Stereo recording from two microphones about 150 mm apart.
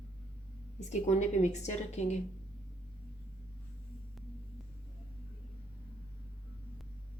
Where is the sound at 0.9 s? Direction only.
50° left (ahead or behind).